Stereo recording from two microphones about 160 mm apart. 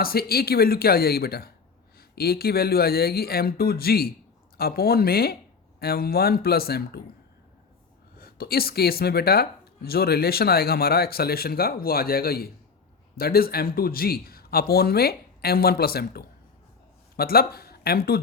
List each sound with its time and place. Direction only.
0.0 s speech: 70° left (ahead or behind)
8.2 s speech: 70° left (ahead or behind)